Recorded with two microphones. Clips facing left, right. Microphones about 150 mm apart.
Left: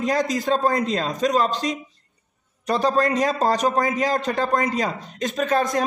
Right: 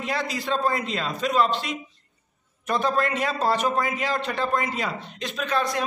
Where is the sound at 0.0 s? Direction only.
40° left (ahead or behind).